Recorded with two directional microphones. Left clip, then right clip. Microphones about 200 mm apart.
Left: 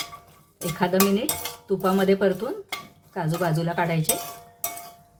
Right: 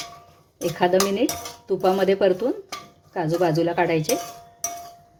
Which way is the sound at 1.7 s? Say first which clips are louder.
Right 2 dB; 30° right (ahead or behind).